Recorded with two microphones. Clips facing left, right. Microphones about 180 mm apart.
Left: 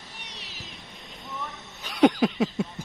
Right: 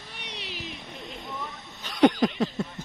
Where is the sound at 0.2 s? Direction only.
65° right (ahead or behind).